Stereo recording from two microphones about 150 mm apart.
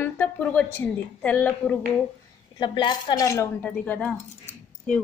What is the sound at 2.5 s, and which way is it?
A woman's voice, 30° left (ahead or behind).